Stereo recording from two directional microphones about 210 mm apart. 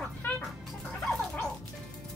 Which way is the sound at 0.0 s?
5° left (ahead or behind).